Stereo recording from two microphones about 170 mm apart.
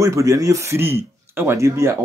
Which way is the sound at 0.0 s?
20° right (ahead or behind).